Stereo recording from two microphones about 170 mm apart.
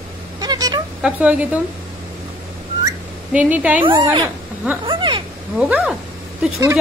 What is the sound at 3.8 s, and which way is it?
Speech, 30° right (ahead or behind).